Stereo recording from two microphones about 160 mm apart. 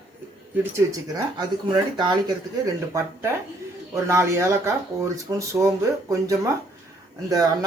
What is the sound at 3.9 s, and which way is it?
Speech, 20° right (ahead or behind).